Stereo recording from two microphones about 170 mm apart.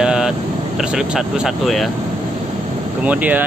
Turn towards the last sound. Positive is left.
turn(degrees=-10)  # may be behind; listen again after turning